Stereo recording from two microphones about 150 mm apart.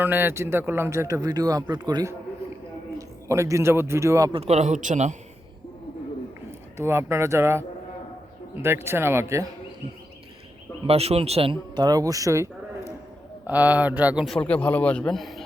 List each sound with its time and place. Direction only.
0.0 s speech: 15° right (ahead or behind)
3.2 s speech: 20° right (ahead or behind)
4.3 s a man's voice: 40° right (ahead or behind)
6.7 s speech: 15° right (ahead or behind)
8.6 s speech: 15° right (ahead or behind)
10.8 s speech: 45° right (ahead or behind); by 12.5 s 20° right (ahead or behind)
13.5 s speech: 10° right (ahead or behind)
14.3 s a man's voice: 5° left (ahead or behind)